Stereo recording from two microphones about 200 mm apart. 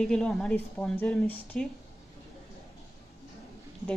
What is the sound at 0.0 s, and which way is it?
Speech, centre (ahead or behind).